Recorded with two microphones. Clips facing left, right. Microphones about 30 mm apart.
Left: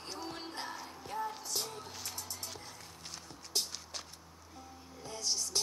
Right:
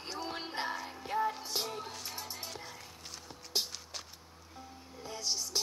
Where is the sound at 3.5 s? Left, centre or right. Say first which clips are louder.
Right 2 dB; centre.